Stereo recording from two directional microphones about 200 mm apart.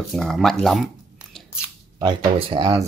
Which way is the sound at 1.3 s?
5° right (ahead or behind).